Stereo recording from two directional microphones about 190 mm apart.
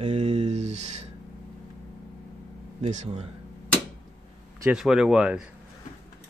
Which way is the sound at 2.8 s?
35° right (ahead or behind).